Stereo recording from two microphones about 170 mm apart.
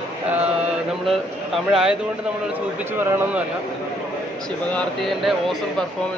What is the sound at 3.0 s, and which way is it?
Speech, 10° right (ahead or behind).